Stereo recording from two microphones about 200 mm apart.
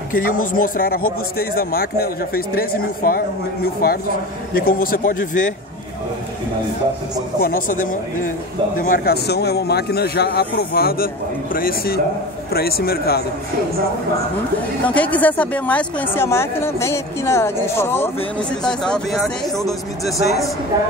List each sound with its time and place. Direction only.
0.1 s a man's voice: 45° left (ahead or behind)
7.4 s a man's voice: 45° left (ahead or behind)
14.9 s speech: 5° left (ahead or behind)
19.6 s speech: 15° left (ahead or behind)